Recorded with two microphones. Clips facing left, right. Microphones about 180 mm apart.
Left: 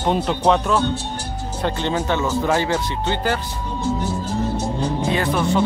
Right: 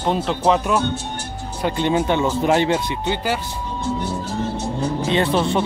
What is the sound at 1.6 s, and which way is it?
Speech, 15° right (ahead or behind).